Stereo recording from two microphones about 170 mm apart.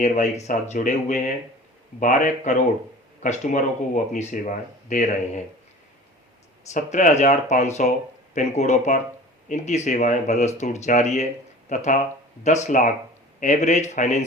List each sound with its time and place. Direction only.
0.0 s speech: 45° left (ahead or behind)
6.7 s speech: 45° left (ahead or behind)